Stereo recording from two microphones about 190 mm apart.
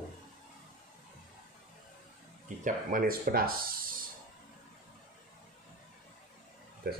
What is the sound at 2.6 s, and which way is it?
Speech, 50° right (ahead or behind).